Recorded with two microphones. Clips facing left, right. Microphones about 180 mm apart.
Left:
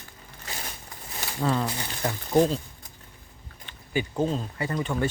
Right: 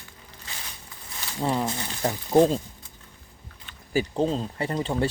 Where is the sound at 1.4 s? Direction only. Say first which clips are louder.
Even; 20° right (ahead or behind).